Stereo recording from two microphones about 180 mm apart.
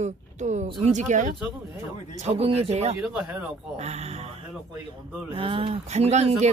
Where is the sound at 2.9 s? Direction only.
5° right (ahead or behind).